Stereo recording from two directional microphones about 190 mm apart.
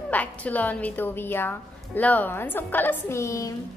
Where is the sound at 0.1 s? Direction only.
10° left (ahead or behind).